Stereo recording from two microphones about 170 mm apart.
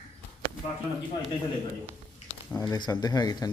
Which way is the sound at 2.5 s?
25° left (ahead or behind).